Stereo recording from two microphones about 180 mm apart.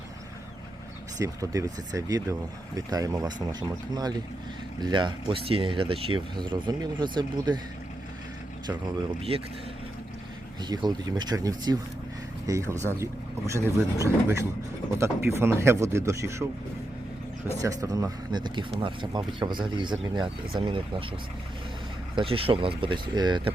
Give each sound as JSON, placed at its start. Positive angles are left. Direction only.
{"t": 1.2, "sound": "speech", "side_deg": -20}
{"t": 10.6, "sound": "speech", "side_deg": -25}
{"t": 17.6, "sound": "speech", "side_deg": -20}
{"t": 22.1, "sound": "speech", "side_deg": -30}